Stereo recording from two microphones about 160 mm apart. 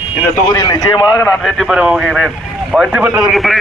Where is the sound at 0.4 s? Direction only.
25° left (ahead or behind).